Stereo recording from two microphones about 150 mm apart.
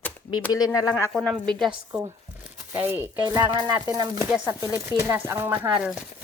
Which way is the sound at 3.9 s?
25° right (ahead or behind).